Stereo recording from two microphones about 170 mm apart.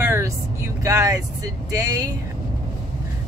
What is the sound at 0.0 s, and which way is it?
Vehicle, 15° right (ahead or behind).